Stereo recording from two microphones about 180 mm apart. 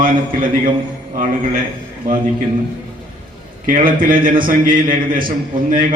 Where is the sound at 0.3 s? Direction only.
50° right (ahead or behind).